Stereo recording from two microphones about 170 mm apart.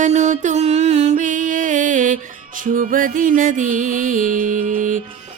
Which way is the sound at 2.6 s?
50° right (ahead or behind).